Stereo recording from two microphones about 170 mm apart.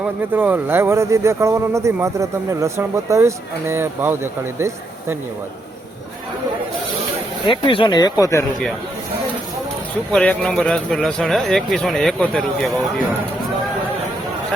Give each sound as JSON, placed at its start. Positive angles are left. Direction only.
{"t": 0.0, "sound": "speech", "side_deg": -10}
{"t": 7.5, "sound": "speech", "side_deg": 30}
{"t": 10.1, "sound": "speech", "side_deg": 5}